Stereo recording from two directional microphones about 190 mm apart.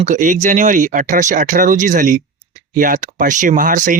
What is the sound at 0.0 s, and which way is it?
Speech, 40° right (ahead or behind).